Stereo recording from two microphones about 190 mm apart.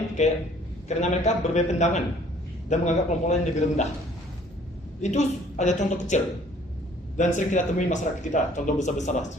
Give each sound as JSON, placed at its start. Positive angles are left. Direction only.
{"t": 0.2, "sound": "speech", "side_deg": 35}
{"t": 5.0, "sound": "speech", "side_deg": 40}